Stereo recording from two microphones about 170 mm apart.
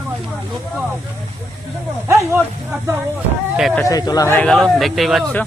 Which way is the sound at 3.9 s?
20° left (ahead or behind).